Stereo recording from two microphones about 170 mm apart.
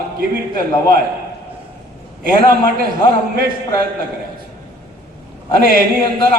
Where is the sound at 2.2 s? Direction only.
60° right (ahead or behind).